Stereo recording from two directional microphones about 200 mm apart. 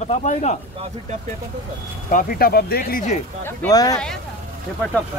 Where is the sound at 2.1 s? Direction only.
45° left (ahead or behind).